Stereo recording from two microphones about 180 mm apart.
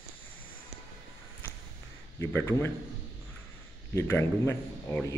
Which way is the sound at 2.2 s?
15° left (ahead or behind).